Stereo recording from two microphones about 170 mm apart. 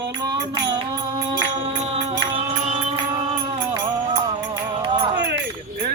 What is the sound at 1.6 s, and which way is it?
Music, 40° right (ahead or behind).